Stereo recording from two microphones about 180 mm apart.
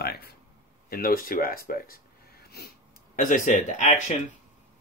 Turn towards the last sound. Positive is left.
turn(degrees=40)  # may be behind; listen again after turning